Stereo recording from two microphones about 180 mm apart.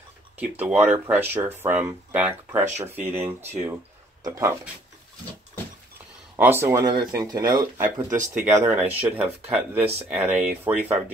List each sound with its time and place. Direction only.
0.4 s speech: 10° right (ahead or behind)
4.2 s speech: 15° right (ahead or behind)
6.3 s speech: 10° right (ahead or behind)